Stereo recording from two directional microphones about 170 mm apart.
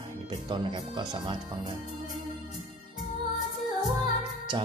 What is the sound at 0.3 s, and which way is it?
Speech, 25° right (ahead or behind).